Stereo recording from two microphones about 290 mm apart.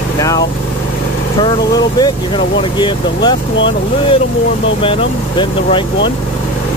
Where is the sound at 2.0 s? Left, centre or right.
Centre.